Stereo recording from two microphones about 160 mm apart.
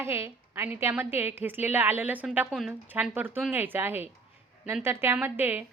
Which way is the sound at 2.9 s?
10° right (ahead or behind).